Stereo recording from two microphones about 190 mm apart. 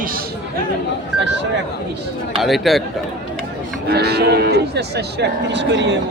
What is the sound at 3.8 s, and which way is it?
Cattle, 60° right (ahead or behind).